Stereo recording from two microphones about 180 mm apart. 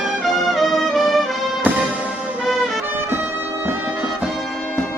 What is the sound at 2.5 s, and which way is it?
Music, centre (ahead or behind).